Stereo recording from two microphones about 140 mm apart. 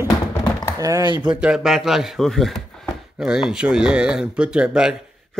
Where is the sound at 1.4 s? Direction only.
5° right (ahead or behind).